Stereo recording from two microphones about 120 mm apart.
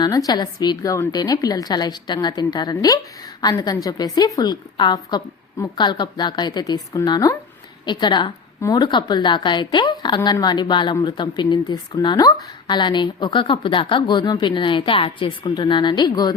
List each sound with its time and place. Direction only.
0.0 s speech: 30° left (ahead or behind)